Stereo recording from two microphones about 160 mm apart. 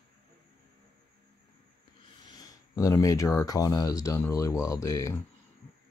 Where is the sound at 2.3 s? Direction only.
25° left (ahead or behind).